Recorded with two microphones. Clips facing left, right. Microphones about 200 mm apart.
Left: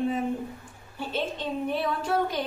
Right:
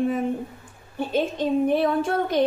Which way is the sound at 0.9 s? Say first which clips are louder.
Right 7 dB; 50° right (ahead or behind).